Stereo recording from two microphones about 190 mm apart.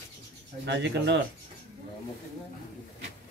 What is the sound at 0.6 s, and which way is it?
Speech, 65° right (ahead or behind).